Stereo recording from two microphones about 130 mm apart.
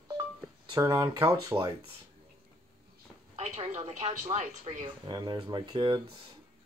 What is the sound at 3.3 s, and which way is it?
A woman's voice, 55° right (ahead or behind).